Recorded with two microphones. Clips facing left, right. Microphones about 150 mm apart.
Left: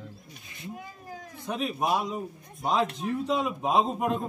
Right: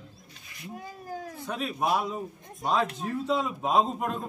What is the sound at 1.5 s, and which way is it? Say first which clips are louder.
Speech: left 1 dB; 15° left (ahead or behind).